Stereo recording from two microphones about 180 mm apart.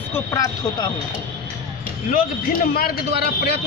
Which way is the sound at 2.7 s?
60° left (ahead or behind).